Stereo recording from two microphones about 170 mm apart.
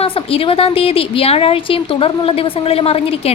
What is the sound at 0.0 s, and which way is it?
A woman's voice, 35° left (ahead or behind).